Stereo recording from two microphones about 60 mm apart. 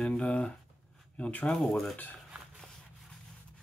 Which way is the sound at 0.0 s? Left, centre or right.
Centre.